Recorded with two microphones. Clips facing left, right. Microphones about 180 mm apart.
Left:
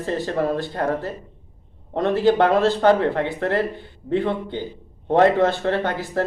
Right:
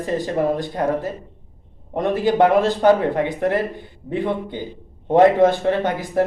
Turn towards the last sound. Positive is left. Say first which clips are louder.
# right 2 dB
turn(degrees=-15)  # may be behind; listen again after turning